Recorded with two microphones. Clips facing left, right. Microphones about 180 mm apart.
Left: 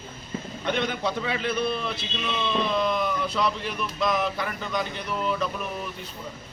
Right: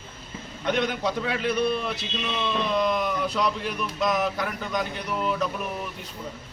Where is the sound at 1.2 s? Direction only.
5° right (ahead or behind).